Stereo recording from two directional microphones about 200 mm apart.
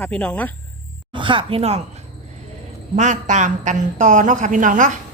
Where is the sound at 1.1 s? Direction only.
25° right (ahead or behind).